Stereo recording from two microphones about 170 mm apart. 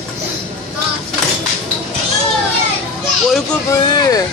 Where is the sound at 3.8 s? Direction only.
20° left (ahead or behind).